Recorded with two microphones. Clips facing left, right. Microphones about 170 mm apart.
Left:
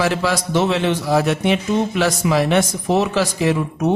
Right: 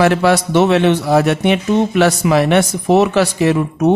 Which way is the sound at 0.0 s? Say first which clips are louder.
Right 7 dB; 60° right (ahead or behind).